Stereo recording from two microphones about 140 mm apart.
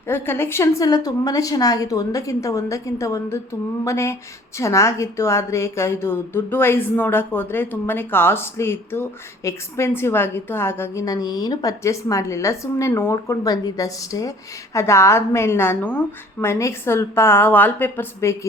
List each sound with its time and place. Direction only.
0.1 s a woman's voice: 15° left (ahead or behind)